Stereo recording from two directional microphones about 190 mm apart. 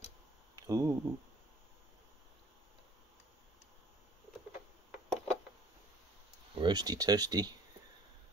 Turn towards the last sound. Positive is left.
turn(degrees=-20)  # may be behind; listen again after turning